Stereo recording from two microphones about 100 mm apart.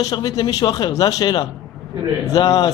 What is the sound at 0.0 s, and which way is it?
A man's voice, 40° left (ahead or behind).